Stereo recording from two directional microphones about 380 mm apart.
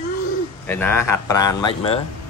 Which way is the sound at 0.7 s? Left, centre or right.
Centre.